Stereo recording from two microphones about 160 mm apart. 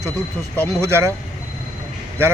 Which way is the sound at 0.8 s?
15° right (ahead or behind).